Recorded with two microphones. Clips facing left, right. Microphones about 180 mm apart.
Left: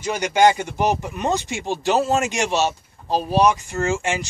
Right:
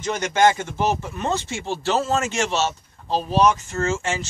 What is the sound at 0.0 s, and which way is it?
Speech, 10° left (ahead or behind).